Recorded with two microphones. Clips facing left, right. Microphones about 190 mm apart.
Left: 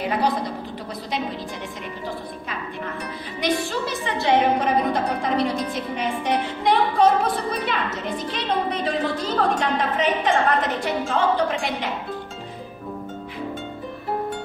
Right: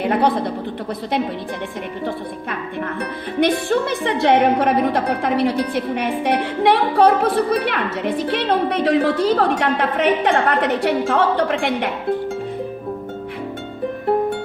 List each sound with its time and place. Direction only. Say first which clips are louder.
0.0 s a woman's voice: right 5 dB; 60° right (ahead or behind)
3.3 s a woman's voice: right 7 dB; 60° right (ahead or behind)